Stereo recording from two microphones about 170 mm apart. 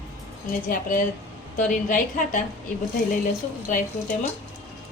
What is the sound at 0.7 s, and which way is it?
A woman's voice, 50° left (ahead or behind).